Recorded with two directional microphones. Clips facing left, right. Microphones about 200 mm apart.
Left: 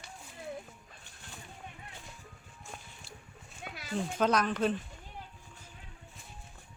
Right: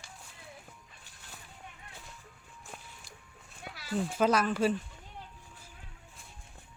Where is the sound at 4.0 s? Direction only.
5° right (ahead or behind).